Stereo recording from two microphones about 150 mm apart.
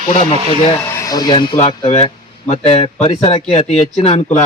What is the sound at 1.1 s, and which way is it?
Speech, 25° left (ahead or behind).